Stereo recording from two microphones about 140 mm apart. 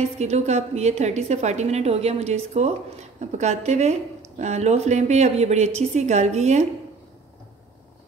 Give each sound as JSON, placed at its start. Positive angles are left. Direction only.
{"t": 0.2, "sound": "a woman's voice", "side_deg": -50}